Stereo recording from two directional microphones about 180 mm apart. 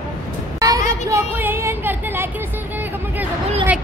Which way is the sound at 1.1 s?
15° right (ahead or behind).